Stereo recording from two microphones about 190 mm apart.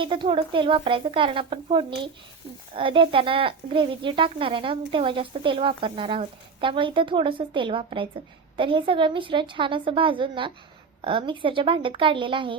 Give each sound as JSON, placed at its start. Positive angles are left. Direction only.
{"t": 0.0, "sound": "speech", "side_deg": -25}